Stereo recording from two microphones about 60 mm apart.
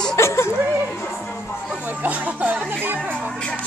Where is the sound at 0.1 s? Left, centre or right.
Left.